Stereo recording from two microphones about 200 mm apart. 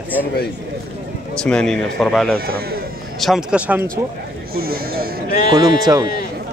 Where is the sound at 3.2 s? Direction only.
5° right (ahead or behind).